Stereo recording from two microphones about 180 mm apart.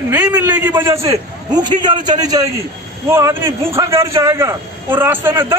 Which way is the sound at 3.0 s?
15° right (ahead or behind).